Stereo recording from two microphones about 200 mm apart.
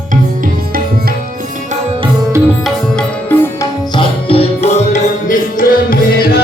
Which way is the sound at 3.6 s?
25° left (ahead or behind).